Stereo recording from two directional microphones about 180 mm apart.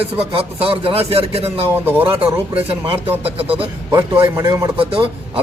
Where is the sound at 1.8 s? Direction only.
10° right (ahead or behind).